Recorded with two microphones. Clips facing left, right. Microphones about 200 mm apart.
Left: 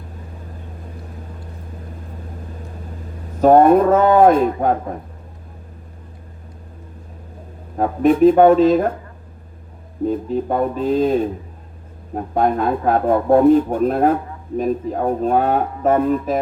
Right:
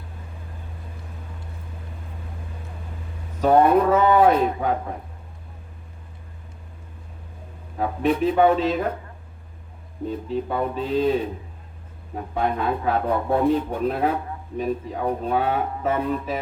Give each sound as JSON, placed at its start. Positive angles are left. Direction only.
{"t": 3.4, "sound": "speech", "side_deg": 45}
{"t": 7.8, "sound": "speech", "side_deg": 45}
{"t": 10.1, "sound": "speech", "side_deg": 45}